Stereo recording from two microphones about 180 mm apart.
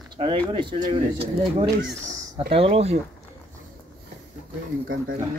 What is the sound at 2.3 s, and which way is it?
Speech, 30° right (ahead or behind).